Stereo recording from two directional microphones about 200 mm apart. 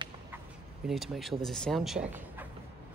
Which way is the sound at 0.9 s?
Centre (ahead or behind).